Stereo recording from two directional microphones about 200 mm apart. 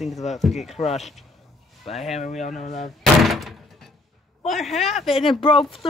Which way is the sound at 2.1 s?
35° left (ahead or behind).